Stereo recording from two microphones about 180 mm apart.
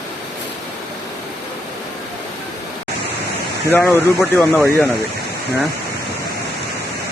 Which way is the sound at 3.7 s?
5° left (ahead or behind).